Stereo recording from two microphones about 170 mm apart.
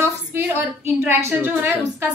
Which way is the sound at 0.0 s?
15° right (ahead or behind).